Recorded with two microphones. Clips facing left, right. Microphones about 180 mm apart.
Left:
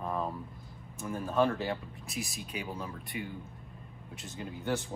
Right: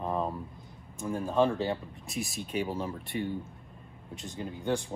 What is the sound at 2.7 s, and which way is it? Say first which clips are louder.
Speech: right 5 dB; 30° right (ahead or behind).